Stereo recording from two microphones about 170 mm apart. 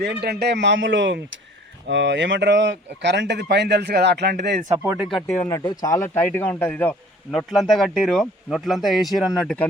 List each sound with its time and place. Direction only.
0.0 s a man's voice: 70° right (ahead or behind)
4.8 s speech: 10° right (ahead or behind)
5.5 s speech: 20° left (ahead or behind); by 9.6 s 5° left (ahead or behind)